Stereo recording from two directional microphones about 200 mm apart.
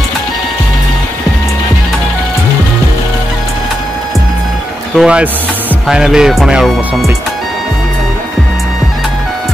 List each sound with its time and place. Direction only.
4.9 s speech: 5° right (ahead or behind)